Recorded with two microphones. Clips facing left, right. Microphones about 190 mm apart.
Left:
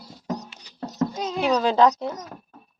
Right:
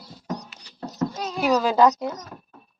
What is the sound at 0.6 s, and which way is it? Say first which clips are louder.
Goat: left 1 dB; 20° left (ahead or behind).